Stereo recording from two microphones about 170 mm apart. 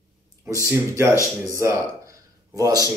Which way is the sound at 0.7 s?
15° right (ahead or behind).